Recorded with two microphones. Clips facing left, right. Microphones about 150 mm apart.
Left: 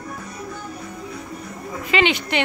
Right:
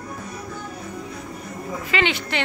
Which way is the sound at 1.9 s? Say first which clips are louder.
Left 4 dB; 20° left (ahead or behind).